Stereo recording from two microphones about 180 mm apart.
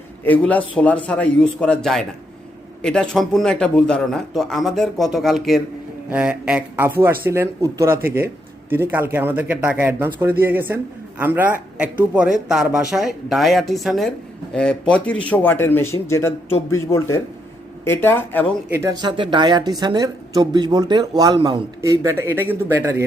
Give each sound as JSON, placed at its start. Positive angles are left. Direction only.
{"t": 0.3, "sound": "a man's voice", "side_deg": 10}
{"t": 18.7, "sound": "speech", "side_deg": -15}